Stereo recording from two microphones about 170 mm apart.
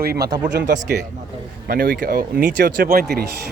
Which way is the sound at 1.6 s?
60° right (ahead or behind).